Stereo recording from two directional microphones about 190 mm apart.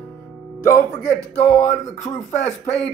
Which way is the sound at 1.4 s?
35° left (ahead or behind).